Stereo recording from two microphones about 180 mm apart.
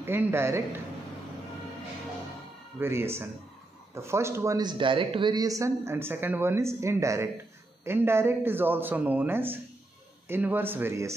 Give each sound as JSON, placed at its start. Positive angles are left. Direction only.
{"t": 0.0, "sound": "a man's voice", "side_deg": -10}
{"t": 2.8, "sound": "a man's voice", "side_deg": -15}